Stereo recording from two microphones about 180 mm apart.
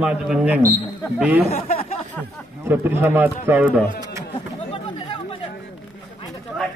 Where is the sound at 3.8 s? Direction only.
25° right (ahead or behind).